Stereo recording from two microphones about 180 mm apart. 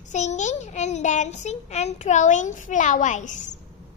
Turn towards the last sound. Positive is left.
turn(degrees=40)  # may be behind; listen again after turning